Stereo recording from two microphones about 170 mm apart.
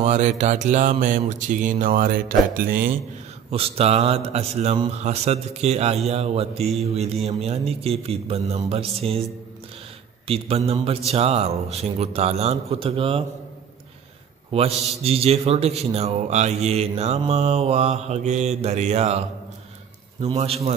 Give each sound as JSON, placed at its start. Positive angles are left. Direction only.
{"t": 0.0, "sound": "speech", "side_deg": -45}
{"t": 3.4, "sound": "a man's voice", "side_deg": -35}
{"t": 10.2, "sound": "a man's voice", "side_deg": -35}
{"t": 14.5, "sound": "a man's voice", "side_deg": -35}